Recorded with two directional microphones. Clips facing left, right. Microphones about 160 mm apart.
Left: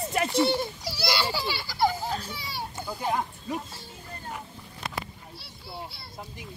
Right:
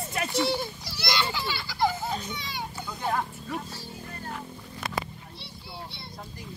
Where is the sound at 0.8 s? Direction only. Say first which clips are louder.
Left 2 dB; 10° left (ahead or behind).